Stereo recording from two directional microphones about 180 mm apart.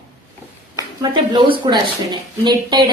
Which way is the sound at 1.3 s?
25° right (ahead or behind).